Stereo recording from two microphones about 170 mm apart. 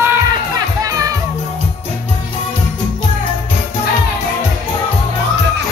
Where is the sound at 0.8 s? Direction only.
20° right (ahead or behind).